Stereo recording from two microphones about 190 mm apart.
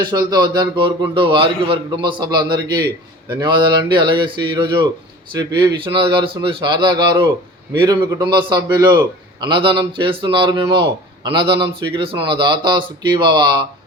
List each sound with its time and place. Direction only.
0.0 s speech: 20° right (ahead or behind)